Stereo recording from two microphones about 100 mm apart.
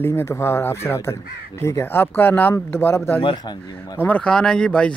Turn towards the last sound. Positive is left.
turn(degrees=10)  # may be behind; listen again after turning